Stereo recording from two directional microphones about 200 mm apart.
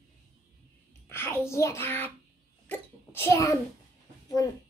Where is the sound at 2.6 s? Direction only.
10° left (ahead or behind).